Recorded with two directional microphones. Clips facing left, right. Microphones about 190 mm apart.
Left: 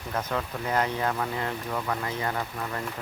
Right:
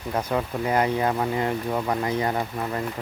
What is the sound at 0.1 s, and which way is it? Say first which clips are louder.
Speech: right 5 dB; 15° right (ahead or behind).